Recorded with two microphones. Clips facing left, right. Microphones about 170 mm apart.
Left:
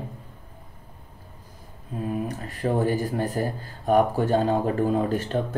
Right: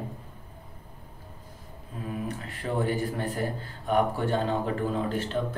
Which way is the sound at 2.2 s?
40° left (ahead or behind).